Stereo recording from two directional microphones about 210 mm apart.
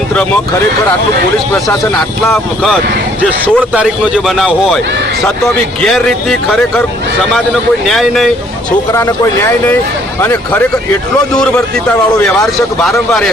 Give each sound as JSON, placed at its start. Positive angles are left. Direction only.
{"t": 1.5, "sound": "speech", "side_deg": 15}
{"t": 3.2, "sound": "speech", "side_deg": -10}
{"t": 7.9, "sound": "speech", "side_deg": 0}
{"t": 8.9, "sound": "speech", "side_deg": 15}
{"t": 12.1, "sound": "speech", "side_deg": 15}